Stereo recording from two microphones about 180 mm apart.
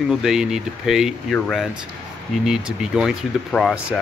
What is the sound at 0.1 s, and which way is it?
Speech, centre (ahead or behind).